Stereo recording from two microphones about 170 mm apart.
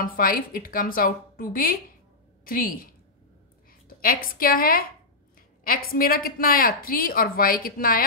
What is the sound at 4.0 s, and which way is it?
A woman's voice, 55° left (ahead or behind).